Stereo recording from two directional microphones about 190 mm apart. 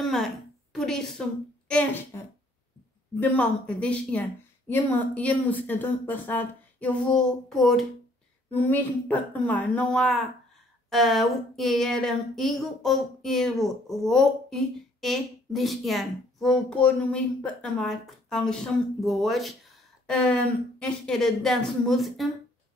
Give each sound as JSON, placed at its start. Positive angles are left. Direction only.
{"t": 0.0, "sound": "a sound", "side_deg": 0}
{"t": 0.7, "sound": "speech", "side_deg": 5}
{"t": 3.2, "sound": "a woman's voice", "side_deg": 5}
{"t": 20.8, "sound": "speech", "side_deg": 0}